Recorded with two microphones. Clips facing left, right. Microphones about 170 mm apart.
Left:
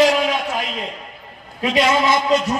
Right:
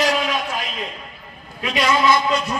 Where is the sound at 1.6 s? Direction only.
25° left (ahead or behind).